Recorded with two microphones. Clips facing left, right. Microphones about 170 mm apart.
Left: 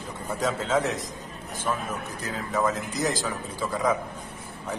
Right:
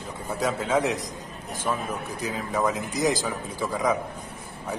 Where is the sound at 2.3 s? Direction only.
15° right (ahead or behind).